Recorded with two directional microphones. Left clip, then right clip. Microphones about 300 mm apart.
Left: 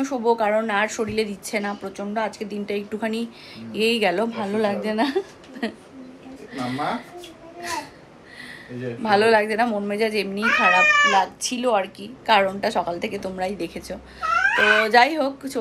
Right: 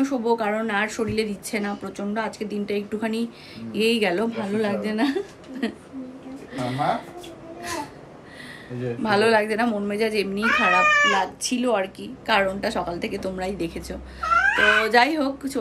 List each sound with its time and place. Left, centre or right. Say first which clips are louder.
0.4 s speech: left 3 dB; centre
9.0 s speech: left 2 dB; centre
14.5 s speech: left 3 dB; centre
14.8 s speech: left 2 dB; centre